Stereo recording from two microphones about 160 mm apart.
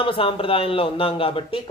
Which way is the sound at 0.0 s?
35° left (ahead or behind).